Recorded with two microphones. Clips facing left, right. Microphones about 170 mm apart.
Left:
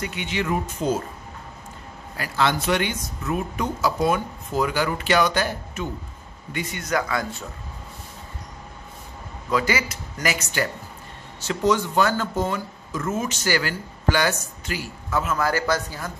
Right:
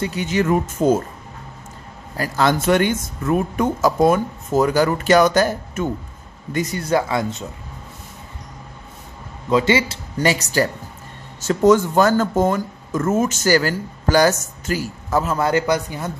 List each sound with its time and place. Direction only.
0.0 s speech: 40° right (ahead or behind)
2.1 s speech: 45° right (ahead or behind); by 7.4 s 20° right (ahead or behind)
9.5 s speech: 25° right (ahead or behind)